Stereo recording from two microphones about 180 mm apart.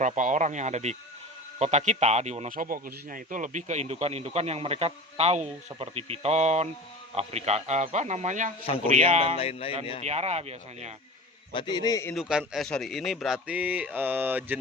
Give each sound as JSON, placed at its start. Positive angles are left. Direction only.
{"t": 0.2, "sound": "a man's voice", "side_deg": -45}
{"t": 9.3, "sound": "speech", "side_deg": 35}
{"t": 10.0, "sound": "a man's voice", "side_deg": -40}
{"t": 11.5, "sound": "a man's voice", "side_deg": 25}
{"t": 12.1, "sound": "speech", "side_deg": 0}